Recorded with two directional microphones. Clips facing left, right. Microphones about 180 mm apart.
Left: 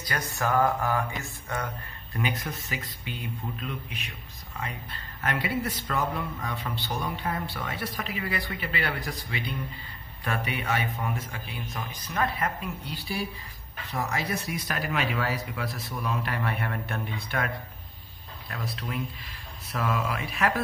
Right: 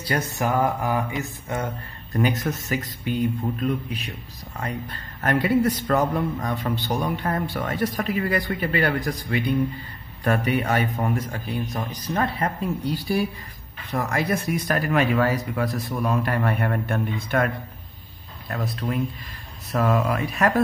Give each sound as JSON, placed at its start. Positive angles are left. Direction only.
{"t": 0.0, "sound": "mantra", "side_deg": -25}
{"t": 2.1, "sound": "speech", "side_deg": -45}
{"t": 18.5, "sound": "speech", "side_deg": -45}